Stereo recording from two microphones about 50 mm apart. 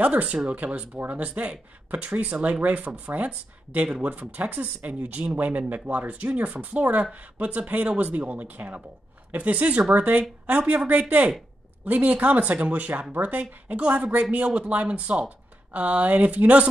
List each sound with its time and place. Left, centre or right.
0.0 s speech: right